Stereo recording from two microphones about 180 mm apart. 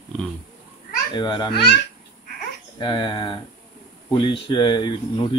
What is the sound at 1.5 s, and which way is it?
Speech, 65° left (ahead or behind).